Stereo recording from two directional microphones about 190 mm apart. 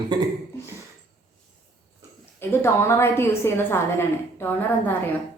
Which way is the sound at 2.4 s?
10° left (ahead or behind).